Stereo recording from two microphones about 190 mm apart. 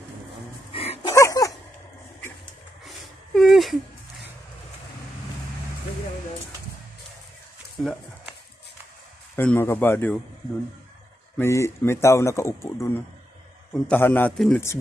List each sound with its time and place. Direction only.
0.7 s dog: 30° left (ahead or behind)
1.1 s dog: 15° left (ahead or behind)
3.3 s a sound: centre (ahead or behind)
7.7 s a sound: centre (ahead or behind)
9.3 s speech: 10° left (ahead or behind)
11.3 s speech: 15° left (ahead or behind)